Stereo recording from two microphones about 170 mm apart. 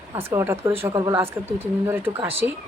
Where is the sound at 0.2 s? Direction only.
15° right (ahead or behind).